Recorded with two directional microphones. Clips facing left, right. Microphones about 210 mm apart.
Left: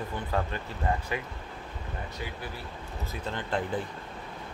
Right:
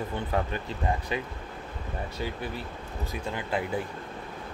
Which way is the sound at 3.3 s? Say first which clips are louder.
Even; 10° right (ahead or behind).